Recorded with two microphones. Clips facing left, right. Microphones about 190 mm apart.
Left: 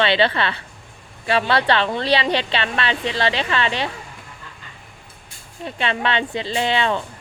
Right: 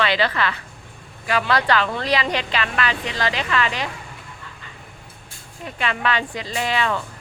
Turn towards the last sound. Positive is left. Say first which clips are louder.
# left 2 dB
turn(degrees=25)  # may be behind; listen again after turning